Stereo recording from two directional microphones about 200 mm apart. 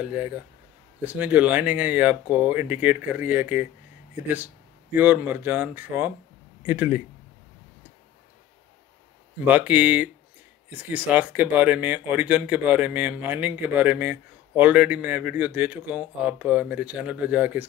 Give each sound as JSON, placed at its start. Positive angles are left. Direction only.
{"t": 0.0, "sound": "speech", "side_deg": -10}
{"t": 4.9, "sound": "speech", "side_deg": -10}
{"t": 9.5, "sound": "speech", "side_deg": -10}